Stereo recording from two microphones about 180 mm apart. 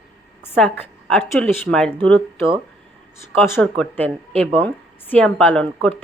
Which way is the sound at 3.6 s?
5° left (ahead or behind).